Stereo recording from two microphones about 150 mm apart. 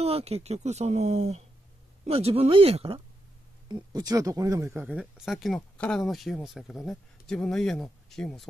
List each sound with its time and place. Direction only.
0.0 s speech: 45° right (ahead or behind)
3.6 s speech: 25° right (ahead or behind); by 8.5 s centre (ahead or behind)